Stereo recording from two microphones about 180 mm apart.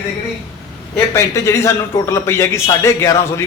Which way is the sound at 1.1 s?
15° left (ahead or behind).